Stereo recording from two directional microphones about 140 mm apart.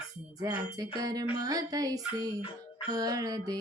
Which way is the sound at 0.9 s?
25° right (ahead or behind).